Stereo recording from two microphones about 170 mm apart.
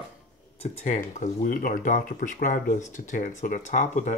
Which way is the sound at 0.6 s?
40° left (ahead or behind).